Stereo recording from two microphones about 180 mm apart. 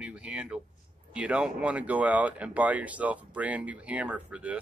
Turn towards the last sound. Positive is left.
turn(degrees=-10)  # may be behind; listen again after turning